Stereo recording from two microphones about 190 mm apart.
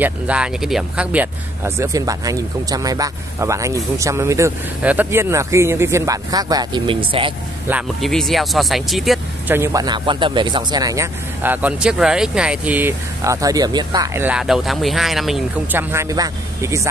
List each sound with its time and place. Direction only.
0.0 s speech: 5° right (ahead or behind); by 7.3 s 25° right (ahead or behind)
8.0 s speech: centre (ahead or behind)
9.6 s speech: 20° right (ahead or behind); by 15.8 s centre (ahead or behind)
15.9 s speech: 15° right (ahead or behind)